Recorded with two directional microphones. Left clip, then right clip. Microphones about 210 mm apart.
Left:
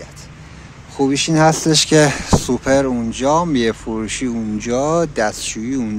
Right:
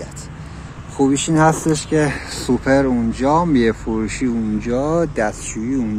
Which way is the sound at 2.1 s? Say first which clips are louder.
Left 3 dB; 35° left (ahead or behind).